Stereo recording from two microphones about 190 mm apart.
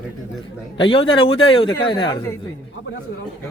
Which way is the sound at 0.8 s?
25° left (ahead or behind).